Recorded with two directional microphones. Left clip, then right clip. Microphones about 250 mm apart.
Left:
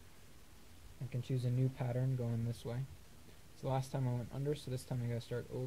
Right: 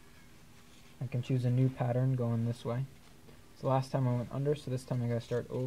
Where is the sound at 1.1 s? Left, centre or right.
Centre.